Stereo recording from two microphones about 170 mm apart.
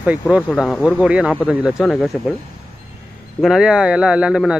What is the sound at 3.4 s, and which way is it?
A man's voice, centre (ahead or behind).